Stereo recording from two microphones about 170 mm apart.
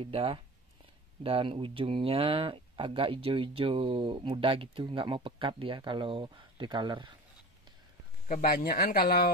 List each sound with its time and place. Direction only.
0.0 s speech: 30° right (ahead or behind)
8.3 s speech: 55° left (ahead or behind)